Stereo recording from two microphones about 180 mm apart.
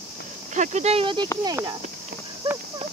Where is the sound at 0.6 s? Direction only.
40° right (ahead or behind); by 1.8 s 20° right (ahead or behind).